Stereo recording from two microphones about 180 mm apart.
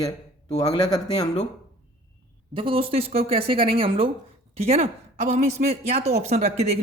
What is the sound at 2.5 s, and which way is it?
Speech, 30° right (ahead or behind).